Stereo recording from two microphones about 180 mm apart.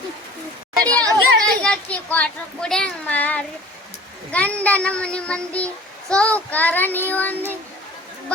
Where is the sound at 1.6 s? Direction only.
5° left (ahead or behind).